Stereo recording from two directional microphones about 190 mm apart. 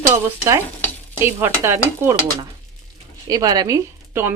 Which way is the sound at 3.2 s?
20° right (ahead or behind).